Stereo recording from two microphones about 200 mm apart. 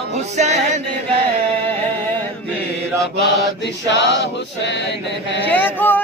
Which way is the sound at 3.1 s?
60° left (ahead or behind).